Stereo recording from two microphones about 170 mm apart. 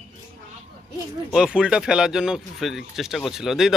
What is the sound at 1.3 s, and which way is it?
Speech, 5° right (ahead or behind).